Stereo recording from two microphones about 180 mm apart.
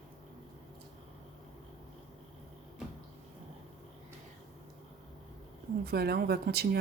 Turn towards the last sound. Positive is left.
turn(degrees=-60)  # may be behind; listen again after turning